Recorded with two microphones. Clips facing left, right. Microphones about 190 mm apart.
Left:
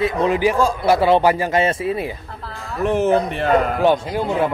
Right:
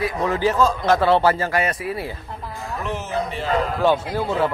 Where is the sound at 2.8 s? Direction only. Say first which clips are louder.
Left 10 dB; 55° left (ahead or behind).